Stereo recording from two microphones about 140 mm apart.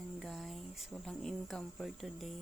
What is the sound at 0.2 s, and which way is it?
Speech, centre (ahead or behind).